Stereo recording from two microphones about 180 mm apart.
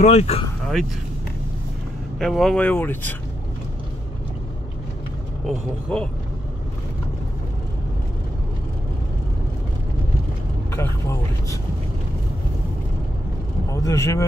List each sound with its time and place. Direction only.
0.0 s speech: 35° left (ahead or behind)
2.1 s speech: centre (ahead or behind)
5.5 s speech: 5° left (ahead or behind)
10.7 s speech: 15° left (ahead or behind)
13.7 s speech: 15° left (ahead or behind)